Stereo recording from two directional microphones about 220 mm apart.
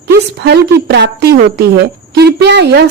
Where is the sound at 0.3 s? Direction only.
50° right (ahead or behind).